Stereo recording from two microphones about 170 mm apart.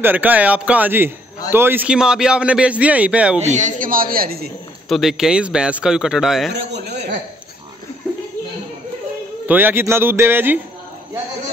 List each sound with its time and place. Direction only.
0.0 s a man's voice: 10° right (ahead or behind)
3.3 s a man's voice: 45° right (ahead or behind); by 4.5 s 60° right (ahead or behind)
4.8 s a man's voice: centre (ahead or behind)
6.5 s a man's voice: 80° right
9.5 s a man's voice: 10° right (ahead or behind)